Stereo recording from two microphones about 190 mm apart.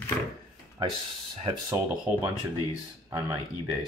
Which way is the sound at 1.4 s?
25° right (ahead or behind).